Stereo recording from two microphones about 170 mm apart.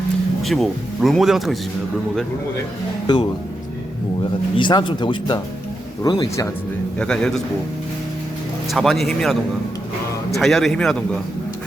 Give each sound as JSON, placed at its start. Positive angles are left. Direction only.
{"t": 0.4, "sound": "speech", "side_deg": 0}
{"t": 3.1, "sound": "speech", "side_deg": 25}
{"t": 4.5, "sound": "speech", "side_deg": 30}
{"t": 7.0, "sound": "speech", "side_deg": 5}
{"t": 8.7, "sound": "speech", "side_deg": 0}